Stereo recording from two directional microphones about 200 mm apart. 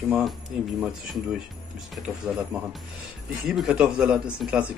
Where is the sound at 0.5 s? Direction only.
5° right (ahead or behind).